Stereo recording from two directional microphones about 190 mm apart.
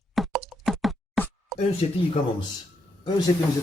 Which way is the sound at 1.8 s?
35° left (ahead or behind).